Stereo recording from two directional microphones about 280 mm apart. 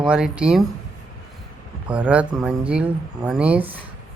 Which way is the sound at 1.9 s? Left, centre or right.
Centre.